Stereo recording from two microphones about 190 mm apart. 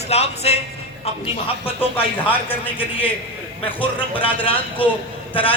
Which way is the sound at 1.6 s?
10° left (ahead or behind).